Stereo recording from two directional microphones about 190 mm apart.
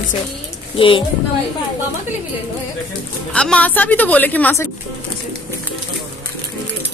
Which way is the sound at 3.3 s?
5° left (ahead or behind).